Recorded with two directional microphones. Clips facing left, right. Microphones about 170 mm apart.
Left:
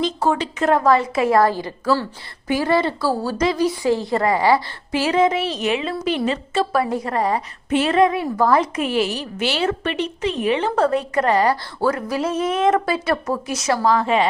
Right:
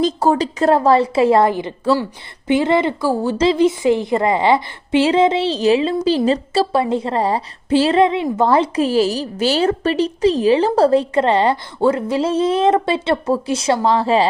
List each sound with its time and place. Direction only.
0.0 s a woman's voice: 40° right (ahead or behind)